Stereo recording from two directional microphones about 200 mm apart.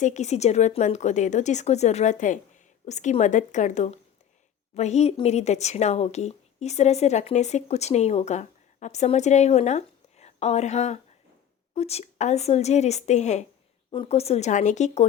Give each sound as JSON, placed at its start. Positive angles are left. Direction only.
{"t": 0.0, "sound": "speech", "side_deg": 35}